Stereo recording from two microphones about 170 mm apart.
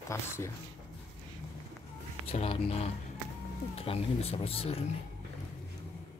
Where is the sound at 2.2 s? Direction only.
35° left (ahead or behind).